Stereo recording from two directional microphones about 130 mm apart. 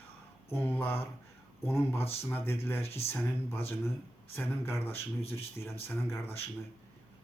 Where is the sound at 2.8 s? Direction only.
50° left (ahead or behind).